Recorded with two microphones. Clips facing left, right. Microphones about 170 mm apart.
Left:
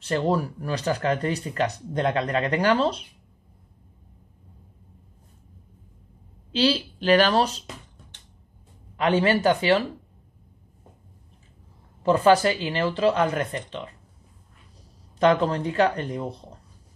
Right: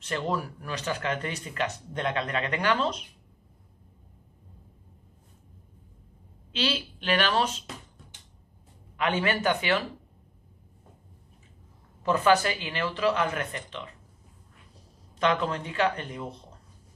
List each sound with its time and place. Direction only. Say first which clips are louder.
0.0 s speech: left 6 dB; 35° left (ahead or behind)
6.5 s speech: left 8 dB; 35° left (ahead or behind)
8.9 s speech: left 6 dB; 35° left (ahead or behind)
12.0 s speech: left 5 dB; 30° left (ahead or behind)
15.1 s speech: left 6 dB; 35° left (ahead or behind)